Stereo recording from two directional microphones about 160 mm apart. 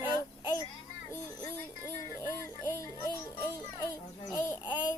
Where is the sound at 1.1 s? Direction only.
15° left (ahead or behind).